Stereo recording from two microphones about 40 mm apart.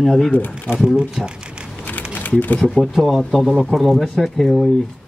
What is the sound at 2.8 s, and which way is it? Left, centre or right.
Speech, centre.